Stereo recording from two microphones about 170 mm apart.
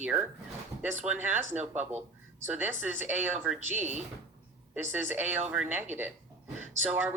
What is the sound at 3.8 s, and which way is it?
Speech, 45° right (ahead or behind).